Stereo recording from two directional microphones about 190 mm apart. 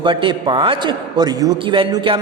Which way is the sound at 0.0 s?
25° right (ahead or behind).